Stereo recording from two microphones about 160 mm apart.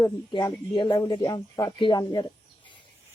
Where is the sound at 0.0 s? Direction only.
25° left (ahead or behind).